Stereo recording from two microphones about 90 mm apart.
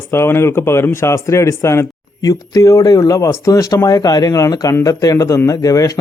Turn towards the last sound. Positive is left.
turn(degrees=40)  # may be behind; listen again after turning